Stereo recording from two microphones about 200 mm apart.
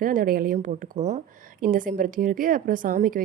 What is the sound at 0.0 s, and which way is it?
A woman's voice, 45° right (ahead or behind).